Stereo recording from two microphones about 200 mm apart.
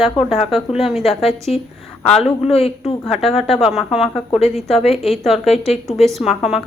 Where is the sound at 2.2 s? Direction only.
30° left (ahead or behind).